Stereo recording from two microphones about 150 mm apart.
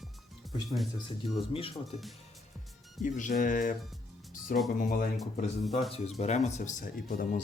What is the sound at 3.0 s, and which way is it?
Speech, 55° left (ahead or behind).